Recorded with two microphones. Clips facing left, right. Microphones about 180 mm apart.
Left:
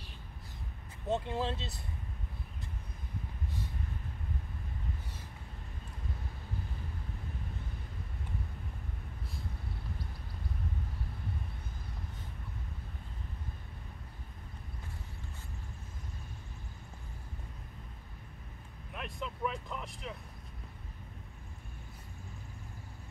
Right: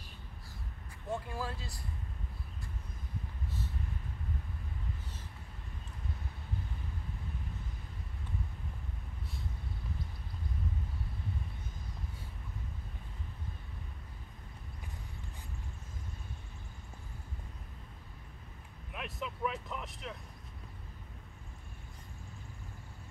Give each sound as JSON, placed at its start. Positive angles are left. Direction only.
{"t": 1.0, "sound": "speech", "side_deg": 20}
{"t": 18.9, "sound": "vehicle", "side_deg": -5}